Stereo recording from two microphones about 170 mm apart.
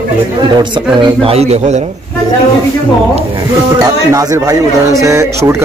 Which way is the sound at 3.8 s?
20° right (ahead or behind).